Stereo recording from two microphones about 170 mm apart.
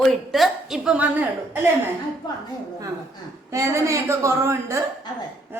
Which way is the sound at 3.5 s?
15° right (ahead or behind).